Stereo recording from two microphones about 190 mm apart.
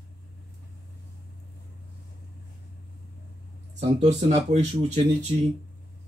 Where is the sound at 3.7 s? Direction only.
35° right (ahead or behind).